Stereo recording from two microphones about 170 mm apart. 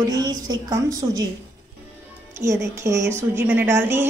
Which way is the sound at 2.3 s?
15° right (ahead or behind).